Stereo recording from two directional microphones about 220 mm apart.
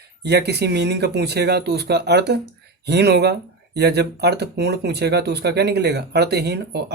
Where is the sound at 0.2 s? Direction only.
50° right (ahead or behind).